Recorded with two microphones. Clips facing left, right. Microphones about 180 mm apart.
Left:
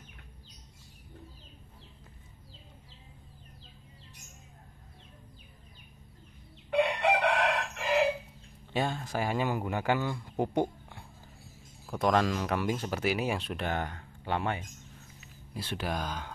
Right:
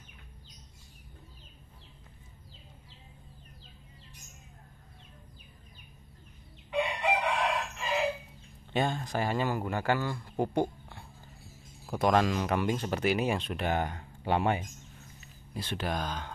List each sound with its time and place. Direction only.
6.7 s chicken: 70° left (ahead or behind)
8.7 s speech: 5° left (ahead or behind)
10.4 s a sound: 20° left (ahead or behind)
12.0 s speech: centre (ahead or behind)
13.7 s speech: 15° right (ahead or behind)
15.5 s speech: 5° left (ahead or behind)